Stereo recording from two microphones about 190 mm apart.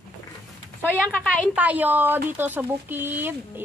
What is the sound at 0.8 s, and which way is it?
Speech, 10° left (ahead or behind).